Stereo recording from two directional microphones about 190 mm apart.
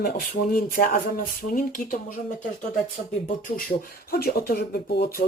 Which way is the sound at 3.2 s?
45° left (ahead or behind).